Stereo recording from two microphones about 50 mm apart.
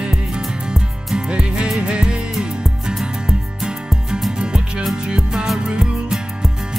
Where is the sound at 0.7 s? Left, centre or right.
Centre.